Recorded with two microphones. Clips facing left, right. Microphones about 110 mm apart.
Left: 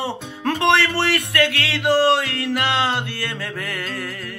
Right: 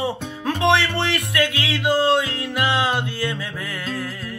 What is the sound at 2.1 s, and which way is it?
Music, 70° left (ahead or behind).